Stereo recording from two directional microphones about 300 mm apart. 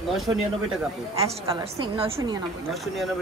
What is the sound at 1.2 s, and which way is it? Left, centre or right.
A woman's voice, centre.